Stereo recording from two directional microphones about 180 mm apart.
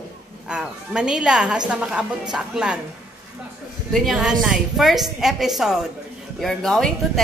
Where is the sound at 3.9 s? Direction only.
Centre (ahead or behind).